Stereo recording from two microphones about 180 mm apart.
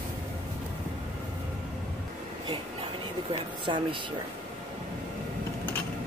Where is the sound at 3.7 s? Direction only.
25° right (ahead or behind).